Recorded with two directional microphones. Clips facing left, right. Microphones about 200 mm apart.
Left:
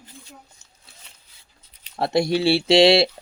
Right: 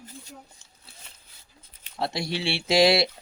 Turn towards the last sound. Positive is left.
turn(degrees=25)  # may be behind; listen again after turning